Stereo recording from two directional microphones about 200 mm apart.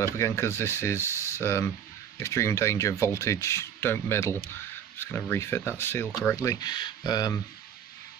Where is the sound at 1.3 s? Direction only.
15° left (ahead or behind).